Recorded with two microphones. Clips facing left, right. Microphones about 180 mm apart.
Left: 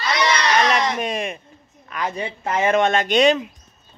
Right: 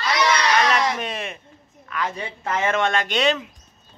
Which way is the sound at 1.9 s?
20° left (ahead or behind).